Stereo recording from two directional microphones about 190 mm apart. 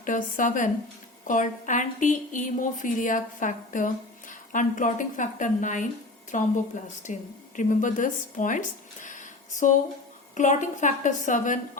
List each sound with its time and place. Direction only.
0.0 s a woman's voice: 45° left (ahead or behind)